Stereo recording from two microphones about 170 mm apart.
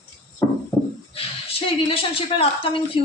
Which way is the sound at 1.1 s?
35° left (ahead or behind).